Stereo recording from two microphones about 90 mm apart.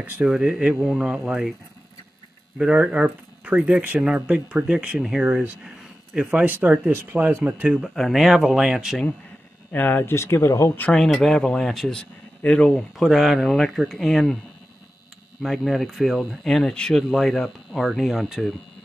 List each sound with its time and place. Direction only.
0.0 s speech: 10° right (ahead or behind)
2.5 s speech: 10° right (ahead or behind)
7.9 s speech: centre (ahead or behind)
9.7 s speech: 20° left (ahead or behind)
11.2 s speech: 5° left (ahead or behind)
12.9 s speech: centre (ahead or behind)
15.4 s speech: centre (ahead or behind)